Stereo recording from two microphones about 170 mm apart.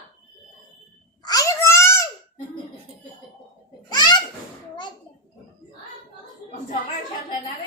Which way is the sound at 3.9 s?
25° left (ahead or behind).